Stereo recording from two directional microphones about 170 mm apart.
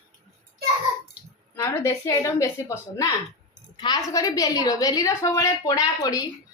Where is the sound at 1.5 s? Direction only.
15° left (ahead or behind).